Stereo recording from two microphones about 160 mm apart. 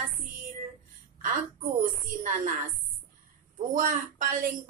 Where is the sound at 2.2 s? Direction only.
55° right (ahead or behind).